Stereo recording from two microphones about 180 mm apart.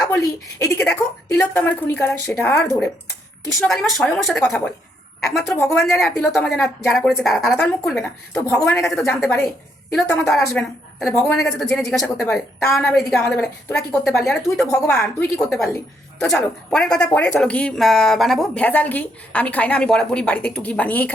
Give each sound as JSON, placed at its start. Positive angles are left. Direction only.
{"t": 0.6, "sound": "speech", "side_deg": 5}
{"t": 3.7, "sound": "a woman's voice", "side_deg": 0}
{"t": 5.5, "sound": "speech", "side_deg": 15}
{"t": 5.8, "sound": "a woman's voice", "side_deg": 0}
{"t": 8.8, "sound": "a woman's voice", "side_deg": 0}